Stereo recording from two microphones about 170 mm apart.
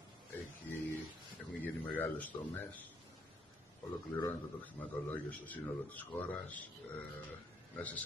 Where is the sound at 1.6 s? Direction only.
10° left (ahead or behind).